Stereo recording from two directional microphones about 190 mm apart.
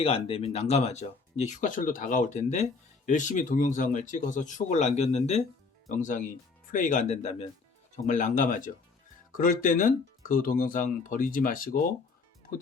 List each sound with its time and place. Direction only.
0.0 s speech: 30° left (ahead or behind); by 11.8 s 50° left (ahead or behind)